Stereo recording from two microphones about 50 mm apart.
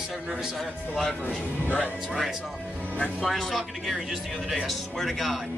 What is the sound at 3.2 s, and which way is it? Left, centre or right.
Speech, centre.